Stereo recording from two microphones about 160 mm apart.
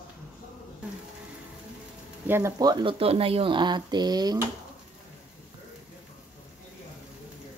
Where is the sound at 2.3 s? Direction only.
15° right (ahead or behind).